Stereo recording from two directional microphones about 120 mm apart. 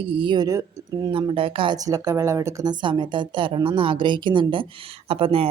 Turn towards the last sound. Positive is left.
turn(degrees=-50)  # may be behind; listen again after turning